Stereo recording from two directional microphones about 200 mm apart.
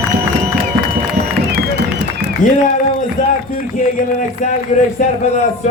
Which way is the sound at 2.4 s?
40° left (ahead or behind).